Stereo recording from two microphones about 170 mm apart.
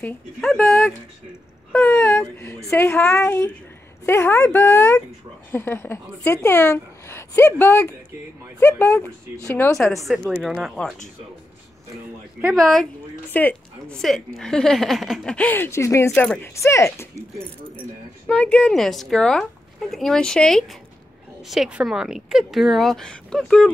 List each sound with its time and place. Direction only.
0.0 s a woman's voice: 5° left (ahead or behind)
10.0 s speech: 5° right (ahead or behind)
12.5 s speech: centre (ahead or behind)
16.1 s speech: 5° left (ahead or behind)
16.5 s speech: 15° left (ahead or behind)
18.2 s speech: 5° left (ahead or behind)